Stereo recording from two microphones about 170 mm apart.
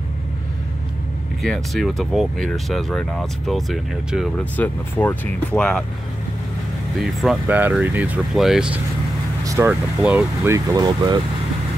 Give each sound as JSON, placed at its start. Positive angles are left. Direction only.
{"t": 1.4, "sound": "speech", "side_deg": 0}
{"t": 4.6, "sound": "speech", "side_deg": 10}
{"t": 7.0, "sound": "speech", "side_deg": 0}
{"t": 7.4, "sound": "speech", "side_deg": -10}
{"t": 9.4, "sound": "vehicle", "side_deg": -20}
{"t": 9.7, "sound": "speech", "side_deg": -10}